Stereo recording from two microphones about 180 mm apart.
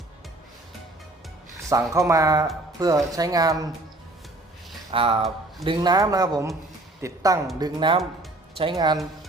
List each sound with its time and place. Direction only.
1.7 s speech: 20° right (ahead or behind)
4.9 s speech: 30° right (ahead or behind)